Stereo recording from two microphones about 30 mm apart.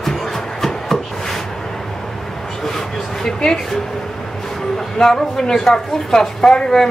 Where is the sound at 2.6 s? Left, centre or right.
Centre.